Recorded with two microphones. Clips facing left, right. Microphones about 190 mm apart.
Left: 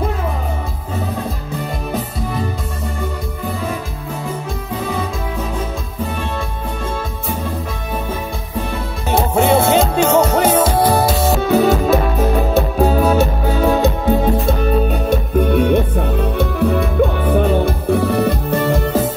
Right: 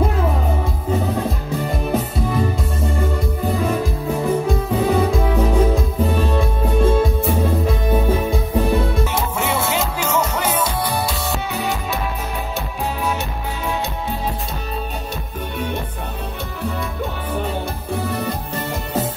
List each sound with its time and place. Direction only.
9.3 s music: 35° left (ahead or behind)
11.5 s music: 55° left (ahead or behind)
12.7 s music: 45° left (ahead or behind)
15.0 s music: 55° left (ahead or behind)